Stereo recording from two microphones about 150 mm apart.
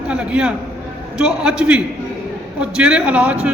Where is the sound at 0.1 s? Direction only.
10° right (ahead or behind).